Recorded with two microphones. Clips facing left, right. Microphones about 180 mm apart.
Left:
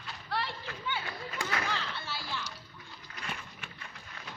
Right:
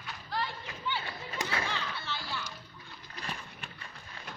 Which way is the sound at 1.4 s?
30° right (ahead or behind).